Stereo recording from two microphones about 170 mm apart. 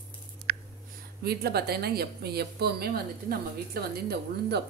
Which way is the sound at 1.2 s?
70° right (ahead or behind).